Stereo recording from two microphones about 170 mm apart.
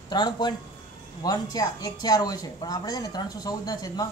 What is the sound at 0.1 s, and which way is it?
Speech, 25° left (ahead or behind).